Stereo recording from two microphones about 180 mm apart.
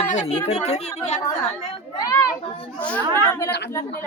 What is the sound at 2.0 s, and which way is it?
Children playing, 20° left (ahead or behind).